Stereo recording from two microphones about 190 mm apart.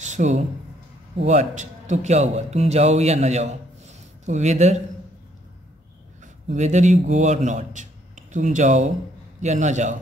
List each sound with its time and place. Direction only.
0.0 s a sound: 40° right (ahead or behind)
1.2 s speech: 40° right (ahead or behind)
6.5 s a man's voice: 40° right (ahead or behind)